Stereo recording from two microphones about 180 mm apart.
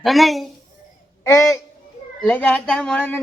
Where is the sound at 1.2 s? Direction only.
15° left (ahead or behind).